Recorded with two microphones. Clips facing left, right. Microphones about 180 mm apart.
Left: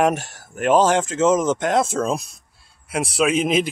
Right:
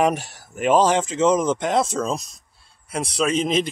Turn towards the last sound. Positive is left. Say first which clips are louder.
# left 2 dB
turn(degrees=5)  # may be behind; listen again after turning